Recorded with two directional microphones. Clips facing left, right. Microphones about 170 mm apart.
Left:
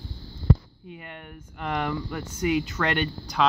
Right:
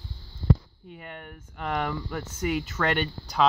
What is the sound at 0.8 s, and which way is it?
Speech, centre (ahead or behind).